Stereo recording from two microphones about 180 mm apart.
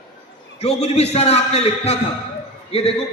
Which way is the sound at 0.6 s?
35° left (ahead or behind).